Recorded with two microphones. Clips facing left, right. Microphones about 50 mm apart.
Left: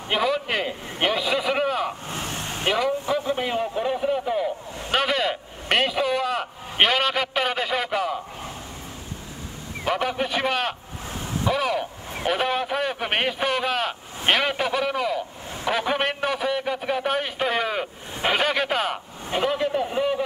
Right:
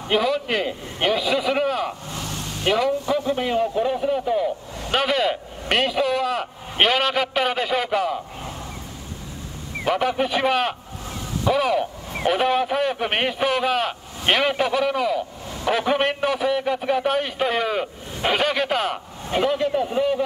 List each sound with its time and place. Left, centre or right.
0.1 s a man's voice: centre
2.0 s vehicle: left
3.3 s a man's voice: centre
9.8 s a man's voice: centre